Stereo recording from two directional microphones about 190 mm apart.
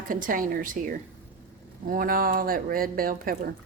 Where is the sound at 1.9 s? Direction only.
50° right (ahead or behind).